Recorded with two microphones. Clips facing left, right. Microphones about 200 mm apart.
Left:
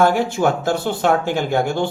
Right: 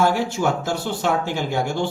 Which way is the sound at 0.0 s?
55° left (ahead or behind).